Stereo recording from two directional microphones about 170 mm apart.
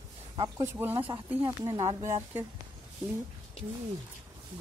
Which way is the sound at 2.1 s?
10° right (ahead or behind).